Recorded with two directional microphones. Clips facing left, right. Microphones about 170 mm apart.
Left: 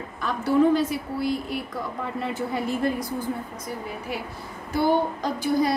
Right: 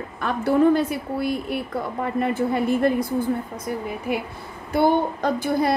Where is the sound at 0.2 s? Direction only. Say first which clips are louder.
Right 2 dB; 55° right (ahead or behind).